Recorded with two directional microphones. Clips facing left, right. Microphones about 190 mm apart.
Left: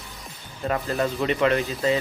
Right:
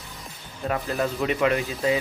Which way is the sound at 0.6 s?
Centre (ahead or behind).